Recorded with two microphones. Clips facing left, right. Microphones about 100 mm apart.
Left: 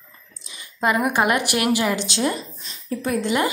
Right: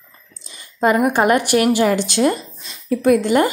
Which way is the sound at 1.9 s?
50° right (ahead or behind).